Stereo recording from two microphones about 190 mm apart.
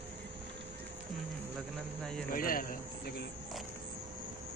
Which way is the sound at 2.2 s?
50° left (ahead or behind).